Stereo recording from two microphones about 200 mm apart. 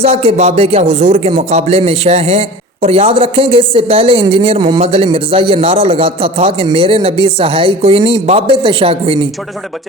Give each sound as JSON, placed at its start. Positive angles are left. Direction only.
{"t": 0.0, "sound": "a woman's voice", "side_deg": -30}